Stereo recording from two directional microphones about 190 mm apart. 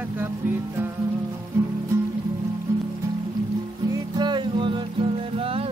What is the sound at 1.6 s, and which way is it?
Music, 15° right (ahead or behind).